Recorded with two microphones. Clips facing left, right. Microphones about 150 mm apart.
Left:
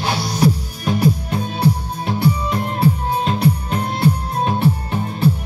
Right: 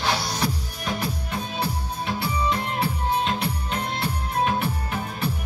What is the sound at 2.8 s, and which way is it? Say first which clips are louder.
Music: left 8 dB; 35° left (ahead or behind).